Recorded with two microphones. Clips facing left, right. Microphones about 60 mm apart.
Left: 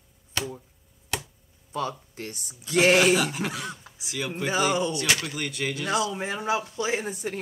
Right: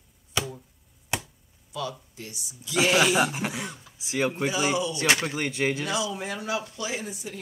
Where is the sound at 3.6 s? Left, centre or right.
Left.